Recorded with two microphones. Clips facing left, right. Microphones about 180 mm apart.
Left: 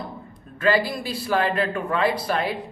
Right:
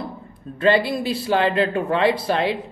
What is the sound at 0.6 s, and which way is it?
A man's voice, 25° right (ahead or behind).